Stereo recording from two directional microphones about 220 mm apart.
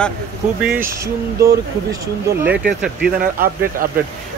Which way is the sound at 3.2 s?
40° right (ahead or behind).